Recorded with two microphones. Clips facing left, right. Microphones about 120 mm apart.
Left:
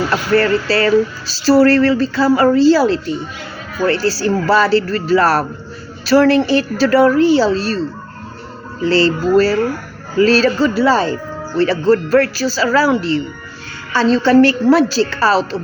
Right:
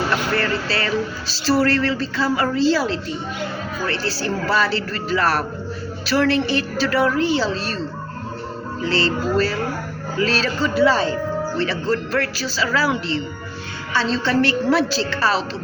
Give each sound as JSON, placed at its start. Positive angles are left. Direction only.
{"t": 0.3, "sound": "music", "side_deg": 40}
{"t": 8.9, "sound": "music", "side_deg": 40}
{"t": 13.9, "sound": "a woman's voice", "side_deg": 45}